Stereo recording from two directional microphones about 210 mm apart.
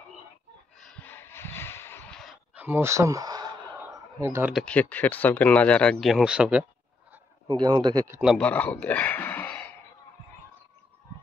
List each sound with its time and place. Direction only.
0.7 s a sound: 5° left (ahead or behind); by 3.5 s 20° right (ahead or behind)
4.2 s speech: 10° right (ahead or behind)
7.4 s a man's voice: 20° right (ahead or behind)
8.2 s speech: centre (ahead or behind)